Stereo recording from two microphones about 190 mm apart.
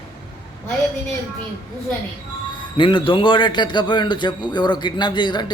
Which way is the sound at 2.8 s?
25° left (ahead or behind).